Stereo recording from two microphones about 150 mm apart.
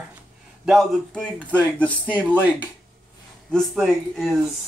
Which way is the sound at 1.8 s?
10° left (ahead or behind).